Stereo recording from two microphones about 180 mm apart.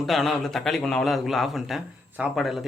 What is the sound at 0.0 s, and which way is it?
Speech, centre (ahead or behind).